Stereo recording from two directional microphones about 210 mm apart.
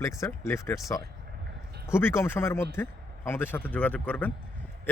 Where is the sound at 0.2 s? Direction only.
15° left (ahead or behind).